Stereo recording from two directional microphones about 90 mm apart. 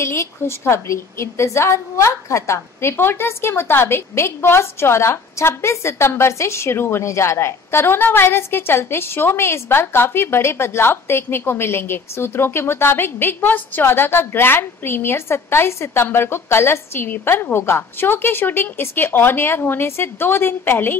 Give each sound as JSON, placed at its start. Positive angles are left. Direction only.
{"t": 0.0, "sound": "a woman's voice", "side_deg": 30}